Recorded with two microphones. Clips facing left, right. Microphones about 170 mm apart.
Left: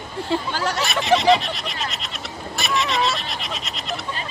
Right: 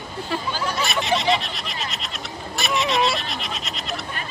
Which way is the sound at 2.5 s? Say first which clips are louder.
Right 1 dB; centre (ahead or behind).